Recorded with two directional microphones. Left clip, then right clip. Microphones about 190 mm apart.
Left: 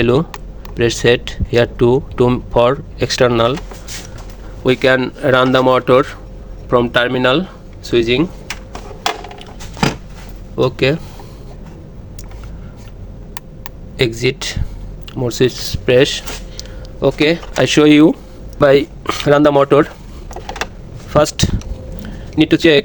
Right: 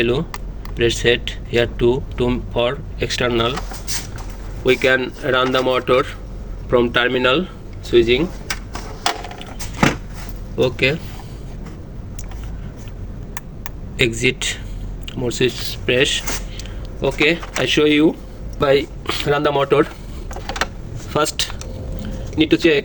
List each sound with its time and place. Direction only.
0.0 s speech: 50° left (ahead or behind)
4.6 s speech: 45° left (ahead or behind)
10.6 s speech: 40° left (ahead or behind)
14.0 s speech: 40° left (ahead or behind)
18.6 s speech: 40° left (ahead or behind)
21.1 s speech: 35° left (ahead or behind)
22.0 s a sound: 40° left (ahead or behind)